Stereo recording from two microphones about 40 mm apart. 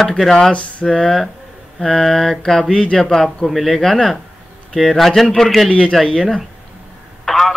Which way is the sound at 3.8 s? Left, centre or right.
Centre.